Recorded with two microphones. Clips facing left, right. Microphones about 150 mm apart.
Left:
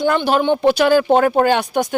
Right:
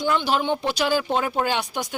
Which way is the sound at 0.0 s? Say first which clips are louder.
Left 6 dB; 55° left (ahead or behind).